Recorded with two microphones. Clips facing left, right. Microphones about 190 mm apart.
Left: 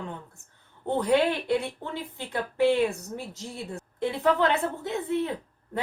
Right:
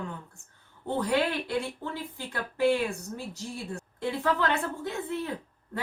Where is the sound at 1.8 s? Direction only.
20° left (ahead or behind).